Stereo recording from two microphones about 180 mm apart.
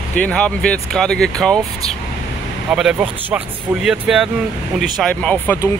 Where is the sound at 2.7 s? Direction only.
Centre (ahead or behind).